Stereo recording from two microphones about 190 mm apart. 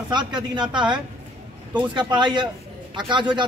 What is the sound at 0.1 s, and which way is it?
Speech, 25° right (ahead or behind).